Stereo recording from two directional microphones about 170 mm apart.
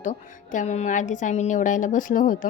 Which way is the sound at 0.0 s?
45° left (ahead or behind).